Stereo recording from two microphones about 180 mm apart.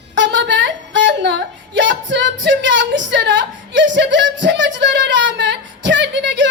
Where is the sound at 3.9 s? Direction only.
90° right.